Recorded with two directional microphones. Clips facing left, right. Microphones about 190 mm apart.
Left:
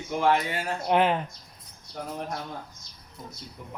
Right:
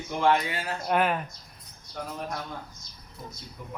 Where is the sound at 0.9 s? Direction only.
25° left (ahead or behind).